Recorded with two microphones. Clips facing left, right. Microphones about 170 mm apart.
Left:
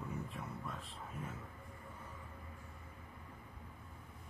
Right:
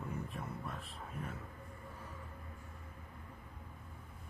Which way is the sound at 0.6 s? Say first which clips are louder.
Right 1 dB; 15° right (ahead or behind).